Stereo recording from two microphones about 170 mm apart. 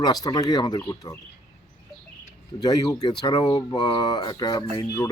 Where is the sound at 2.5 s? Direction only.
25° left (ahead or behind).